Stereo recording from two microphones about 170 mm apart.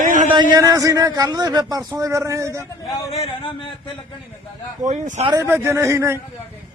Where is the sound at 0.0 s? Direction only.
55° right (ahead or behind).